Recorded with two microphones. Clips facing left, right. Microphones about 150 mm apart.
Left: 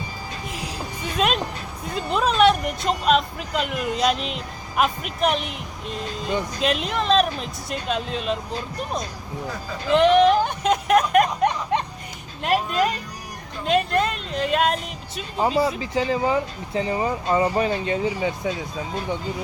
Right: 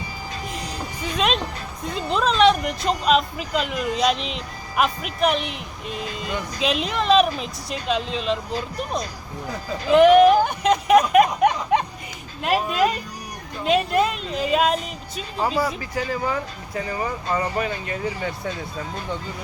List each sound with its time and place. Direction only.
0.5 s a sound: 5° left (ahead or behind)
1.9 s speech: centre (ahead or behind)
9.9 s speech: 5° right (ahead or behind)
13.7 s speech: 5° right (ahead or behind)
15.8 s speech: 20° left (ahead or behind)